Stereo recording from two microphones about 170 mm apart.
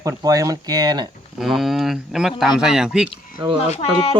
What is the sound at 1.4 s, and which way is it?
Speech, centre (ahead or behind).